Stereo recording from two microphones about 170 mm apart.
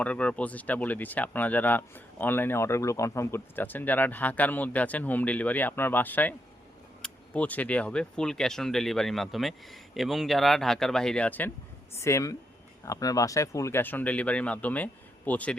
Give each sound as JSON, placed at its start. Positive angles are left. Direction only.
{"t": 0.0, "sound": "speech", "side_deg": 10}